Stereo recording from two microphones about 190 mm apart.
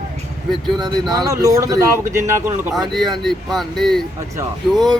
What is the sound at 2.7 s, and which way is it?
Speech, centre (ahead or behind).